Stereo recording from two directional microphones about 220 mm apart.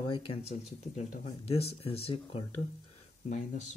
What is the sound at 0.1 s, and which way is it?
Speech, 25° left (ahead or behind).